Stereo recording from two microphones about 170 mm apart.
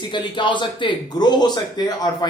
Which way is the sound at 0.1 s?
25° left (ahead or behind).